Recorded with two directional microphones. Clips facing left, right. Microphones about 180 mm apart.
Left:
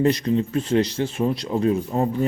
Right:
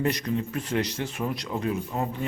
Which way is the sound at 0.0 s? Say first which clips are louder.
Left 7 dB; 30° left (ahead or behind).